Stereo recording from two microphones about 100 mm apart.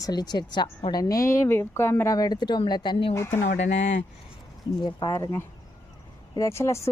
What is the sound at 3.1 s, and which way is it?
Speech, 25° left (ahead or behind).